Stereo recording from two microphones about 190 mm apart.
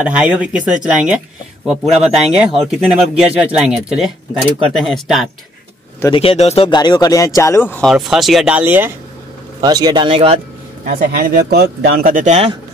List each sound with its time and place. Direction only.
0.0 s speech: 5° right (ahead or behind)
6.1 s speech: 30° left (ahead or behind); by 7.9 s 10° left (ahead or behind)
7.9 s speech: centre (ahead or behind)
9.6 s speech: 20° right (ahead or behind)
10.9 s speech: 50° right (ahead or behind)